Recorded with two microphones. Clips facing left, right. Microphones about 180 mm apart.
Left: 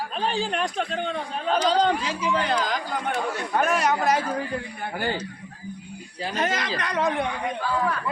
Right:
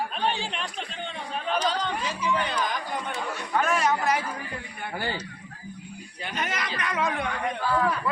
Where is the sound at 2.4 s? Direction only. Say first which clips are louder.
Left 4 dB; 90° left.